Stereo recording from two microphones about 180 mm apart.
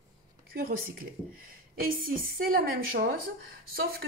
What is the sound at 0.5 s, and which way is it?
Speech, 55° right (ahead or behind).